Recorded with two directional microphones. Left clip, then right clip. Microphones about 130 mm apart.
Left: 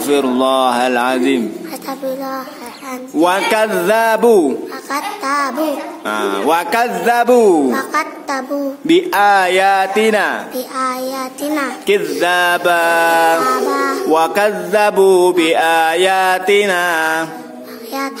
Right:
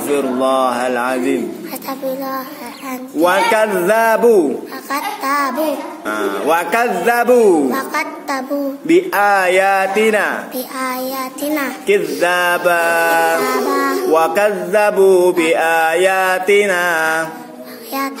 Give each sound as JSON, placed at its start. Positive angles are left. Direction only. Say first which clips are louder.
{"t": 0.1, "sound": "speech", "louder": "left 2 dB", "side_deg": 35}
{"t": 1.9, "sound": "a woman's voice", "louder": "even", "side_deg": 15}
{"t": 3.2, "sound": "speech", "louder": "even", "side_deg": 35}
{"t": 4.9, "sound": "music", "louder": "even", "side_deg": 20}
{"t": 6.0, "sound": "music", "louder": "left 1 dB", "side_deg": 35}